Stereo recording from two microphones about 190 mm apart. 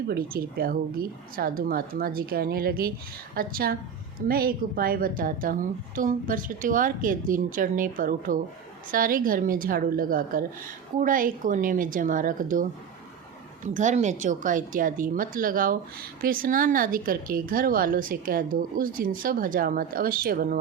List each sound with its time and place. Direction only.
0.1 s speech: 50° right (ahead or behind)
13.7 s speech: 40° right (ahead or behind)